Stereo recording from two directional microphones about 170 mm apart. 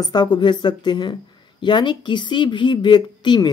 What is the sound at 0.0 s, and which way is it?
Speech, 25° left (ahead or behind).